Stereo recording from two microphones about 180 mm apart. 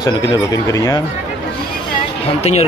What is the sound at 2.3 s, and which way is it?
Speech, 35° left (ahead or behind).